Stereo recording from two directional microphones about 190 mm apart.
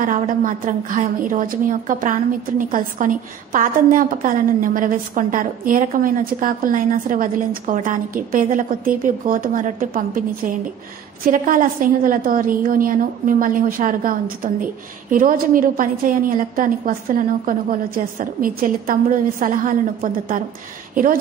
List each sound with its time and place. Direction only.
0.0 s a woman's voice: 45° right (ahead or behind)